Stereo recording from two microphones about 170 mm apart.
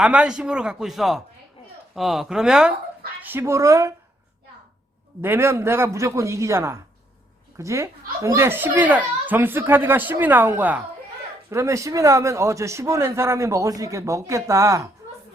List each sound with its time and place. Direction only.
0.0 s a man's voice: 5° right (ahead or behind)
5.2 s a man's voice: 15° right (ahead or behind)